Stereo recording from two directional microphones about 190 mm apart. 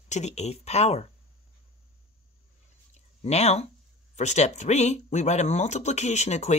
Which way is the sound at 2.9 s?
35° left (ahead or behind).